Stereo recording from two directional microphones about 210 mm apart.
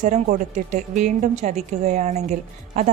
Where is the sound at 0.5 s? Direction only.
35° right (ahead or behind).